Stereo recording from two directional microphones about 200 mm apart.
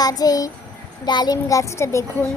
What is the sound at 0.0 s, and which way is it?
Child singing, 20° left (ahead or behind).